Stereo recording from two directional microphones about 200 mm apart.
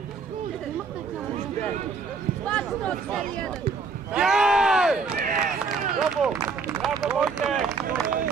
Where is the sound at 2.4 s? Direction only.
5° left (ahead or behind).